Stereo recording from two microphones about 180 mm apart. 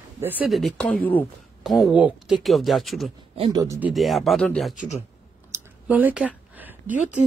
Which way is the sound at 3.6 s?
15° right (ahead or behind).